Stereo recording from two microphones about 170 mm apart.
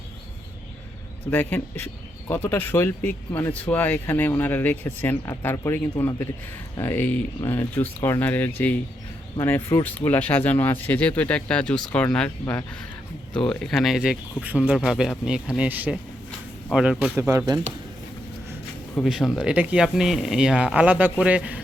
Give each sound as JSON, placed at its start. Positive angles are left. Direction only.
{"t": 1.3, "sound": "speech", "side_deg": 10}
{"t": 17.2, "sound": "speech", "side_deg": -15}
{"t": 19.0, "sound": "speech", "side_deg": 0}